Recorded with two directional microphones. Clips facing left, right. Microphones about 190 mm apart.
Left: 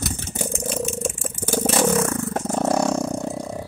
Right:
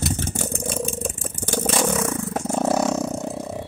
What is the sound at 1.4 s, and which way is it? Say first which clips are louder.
Vehicle: left 2 dB; 5° left (ahead or behind).